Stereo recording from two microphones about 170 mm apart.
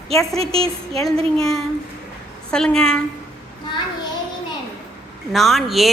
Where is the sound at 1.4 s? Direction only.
Centre (ahead or behind).